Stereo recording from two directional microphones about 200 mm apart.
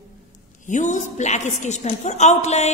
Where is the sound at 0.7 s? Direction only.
35° left (ahead or behind).